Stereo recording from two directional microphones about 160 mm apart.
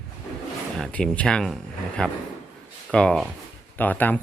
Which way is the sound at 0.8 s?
5° left (ahead or behind).